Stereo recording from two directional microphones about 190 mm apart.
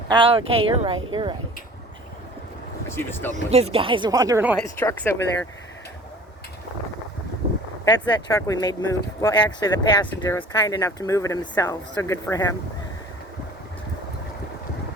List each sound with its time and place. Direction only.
0.1 s speech: 25° right (ahead or behind)
2.9 s speech: 10° left (ahead or behind)
3.3 s speech: 35° right (ahead or behind)
4.8 s speech: 10° left (ahead or behind)
7.9 s speech: 20° left (ahead or behind)
10.1 s speech: 10° left (ahead or behind)